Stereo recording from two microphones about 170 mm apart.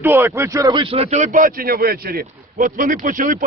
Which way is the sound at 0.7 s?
30° right (ahead or behind).